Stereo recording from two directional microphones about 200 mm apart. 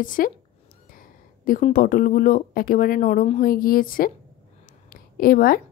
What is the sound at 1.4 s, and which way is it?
A woman's voice, 45° left (ahead or behind).